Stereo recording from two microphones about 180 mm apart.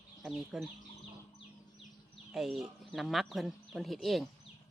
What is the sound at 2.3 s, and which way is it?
Speech, 5° right (ahead or behind).